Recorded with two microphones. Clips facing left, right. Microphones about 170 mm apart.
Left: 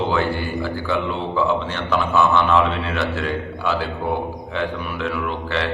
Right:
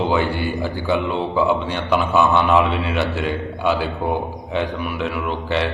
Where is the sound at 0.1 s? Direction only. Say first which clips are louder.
Right 1 dB; 15° right (ahead or behind).